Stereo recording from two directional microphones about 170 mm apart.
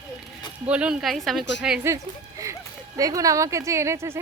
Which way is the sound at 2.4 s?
20° right (ahead or behind).